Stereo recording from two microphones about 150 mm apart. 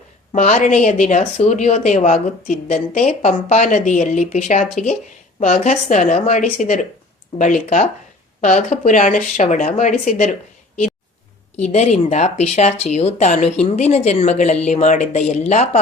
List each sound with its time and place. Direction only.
0.3 s speech: 55° left (ahead or behind)
11.6 s speech: 50° left (ahead or behind)